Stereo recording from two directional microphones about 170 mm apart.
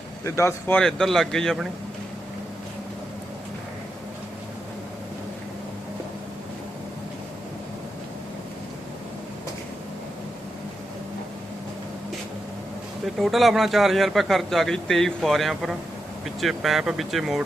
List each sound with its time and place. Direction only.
0.3 s speech: 15° left (ahead or behind)
0.8 s a man's voice: centre (ahead or behind)
13.1 s a man's voice: centre (ahead or behind)